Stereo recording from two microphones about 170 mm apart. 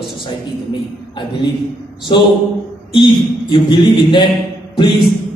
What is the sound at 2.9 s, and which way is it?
A man's voice, 30° left (ahead or behind).